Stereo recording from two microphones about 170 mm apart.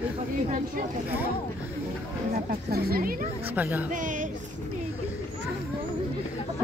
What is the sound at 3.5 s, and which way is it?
Speech, 10° right (ahead or behind).